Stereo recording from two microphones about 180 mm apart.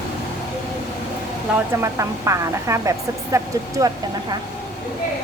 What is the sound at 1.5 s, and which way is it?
Speech, 15° right (ahead or behind).